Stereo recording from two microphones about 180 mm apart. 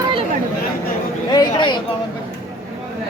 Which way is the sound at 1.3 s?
25° left (ahead or behind).